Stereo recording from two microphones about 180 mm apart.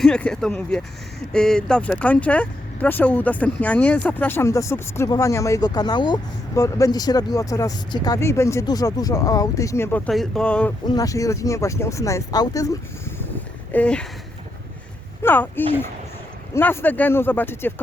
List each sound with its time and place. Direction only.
0.0 s speech: 5° left (ahead or behind)
10.1 s speech: centre (ahead or behind)
10.8 s speech: 20° left (ahead or behind)
15.2 s speech: 10° left (ahead or behind)